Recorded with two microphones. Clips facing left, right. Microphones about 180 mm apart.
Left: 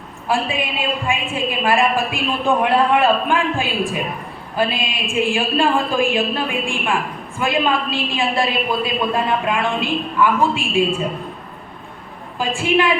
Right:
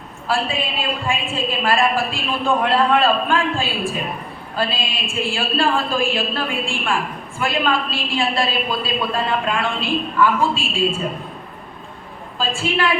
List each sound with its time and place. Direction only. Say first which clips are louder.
0.3 s a woman's voice: left 1 dB; 15° left (ahead or behind)
12.4 s a woman's voice: left 3 dB; 15° left (ahead or behind)